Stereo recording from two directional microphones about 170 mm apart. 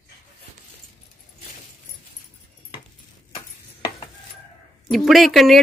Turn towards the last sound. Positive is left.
turn(degrees=0)  # may be behind; listen again after turning